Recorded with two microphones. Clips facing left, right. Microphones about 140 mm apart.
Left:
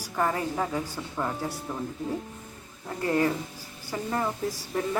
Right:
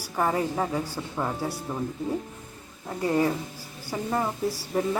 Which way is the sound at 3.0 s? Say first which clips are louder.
Right 1 dB; 10° right (ahead or behind).